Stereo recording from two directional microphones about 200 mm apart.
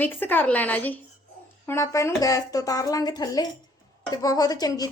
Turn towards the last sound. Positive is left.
turn(degrees=20)  # may be behind; listen again after turning